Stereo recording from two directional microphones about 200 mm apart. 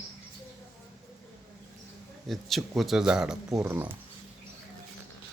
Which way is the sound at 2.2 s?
Centre (ahead or behind).